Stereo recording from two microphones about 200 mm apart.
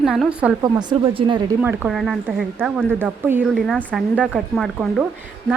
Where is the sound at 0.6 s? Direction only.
25° right (ahead or behind).